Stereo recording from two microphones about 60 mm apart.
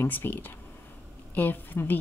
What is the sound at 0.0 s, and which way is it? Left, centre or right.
A woman's voice, left.